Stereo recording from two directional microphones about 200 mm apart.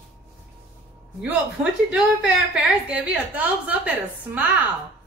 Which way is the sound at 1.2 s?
5° right (ahead or behind).